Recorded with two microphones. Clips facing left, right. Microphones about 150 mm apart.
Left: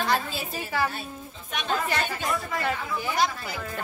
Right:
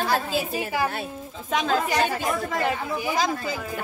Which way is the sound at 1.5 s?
90° right.